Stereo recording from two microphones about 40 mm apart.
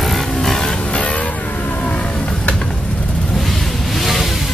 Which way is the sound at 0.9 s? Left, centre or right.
Left.